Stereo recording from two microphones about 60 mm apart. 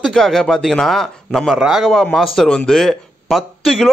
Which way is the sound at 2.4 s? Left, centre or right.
Centre.